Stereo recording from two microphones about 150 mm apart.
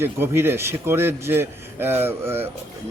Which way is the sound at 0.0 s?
15° right (ahead or behind).